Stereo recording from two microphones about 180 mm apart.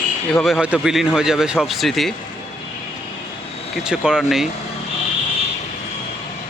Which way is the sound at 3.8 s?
5° right (ahead or behind).